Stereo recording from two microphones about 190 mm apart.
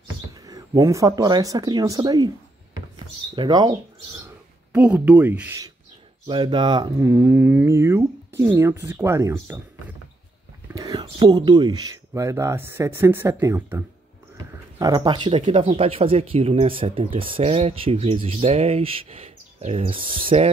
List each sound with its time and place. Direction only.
0.3 s speech: 20° right (ahead or behind)
4.7 s speech: 5° right (ahead or behind)
6.2 s speech: 25° right (ahead or behind)
7.0 s speech: 15° right (ahead or behind); by 20.4 s 30° right (ahead or behind)